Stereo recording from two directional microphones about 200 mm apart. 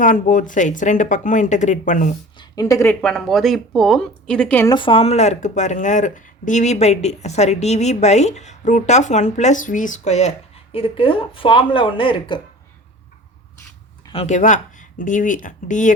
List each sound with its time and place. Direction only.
0.0 s speech: 40° left (ahead or behind)
2.4 s a woman's voice: 20° left (ahead or behind)
3.0 s speech: centre (ahead or behind)
4.7 s speech: 25° left (ahead or behind)
14.1 s speech: 30° left (ahead or behind)